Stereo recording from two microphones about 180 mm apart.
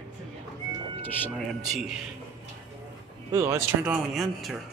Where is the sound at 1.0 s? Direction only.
10° left (ahead or behind).